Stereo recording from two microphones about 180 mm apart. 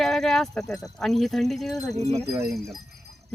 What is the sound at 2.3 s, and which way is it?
Speech, 15° right (ahead or behind).